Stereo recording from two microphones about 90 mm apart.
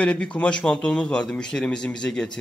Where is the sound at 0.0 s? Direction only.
10° left (ahead or behind).